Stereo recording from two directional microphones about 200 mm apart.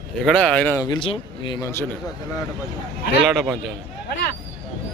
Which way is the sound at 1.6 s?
15° left (ahead or behind).